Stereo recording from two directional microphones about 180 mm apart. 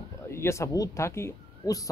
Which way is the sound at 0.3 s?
15° left (ahead or behind).